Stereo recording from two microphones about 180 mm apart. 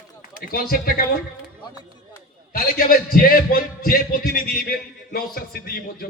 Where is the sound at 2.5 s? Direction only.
55° left (ahead or behind).